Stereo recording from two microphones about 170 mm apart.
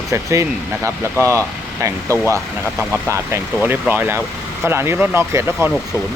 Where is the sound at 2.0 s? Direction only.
15° left (ahead or behind).